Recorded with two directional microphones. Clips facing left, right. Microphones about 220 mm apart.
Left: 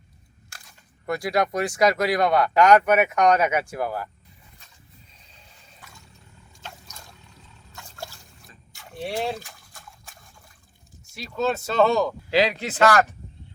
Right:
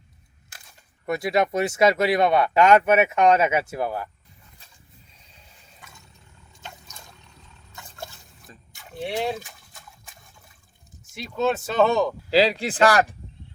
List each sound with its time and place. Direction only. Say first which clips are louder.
1.1 s speech: right 1 dB; 25° right (ahead or behind)
6.7 s a sound: even; centre (ahead or behind)
9.2 s liquid: right 1 dB; centre (ahead or behind)
11.1 s speech: right 1 dB; centre (ahead or behind)
12.3 s speech: right 3 dB; 35° right (ahead or behind)